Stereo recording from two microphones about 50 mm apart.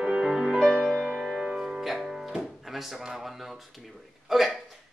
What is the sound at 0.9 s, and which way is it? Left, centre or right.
Music, right.